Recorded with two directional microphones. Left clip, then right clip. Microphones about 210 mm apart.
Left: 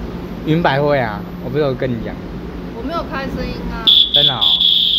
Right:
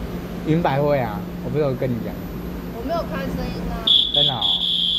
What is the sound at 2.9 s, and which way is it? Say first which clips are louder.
Speech: left 2 dB; 35° left (ahead or behind).